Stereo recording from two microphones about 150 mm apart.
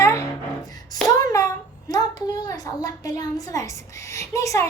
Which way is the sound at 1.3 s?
20° left (ahead or behind).